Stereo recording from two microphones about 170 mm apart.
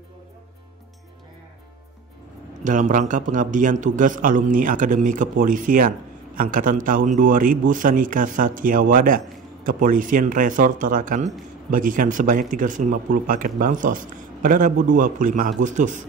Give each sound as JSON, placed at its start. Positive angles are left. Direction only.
{"t": 2.6, "sound": "a man's voice", "side_deg": -50}